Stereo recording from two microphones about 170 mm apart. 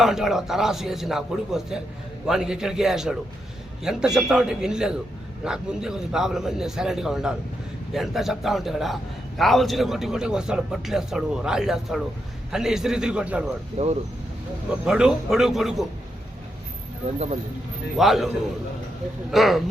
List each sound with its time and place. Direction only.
0.0 s a man's voice: centre (ahead or behind)
13.8 s speech: 40° right (ahead or behind)
14.7 s a man's voice: 5° right (ahead or behind)
17.9 s a man's voice: centre (ahead or behind)
19.3 s a man's voice: centre (ahead or behind)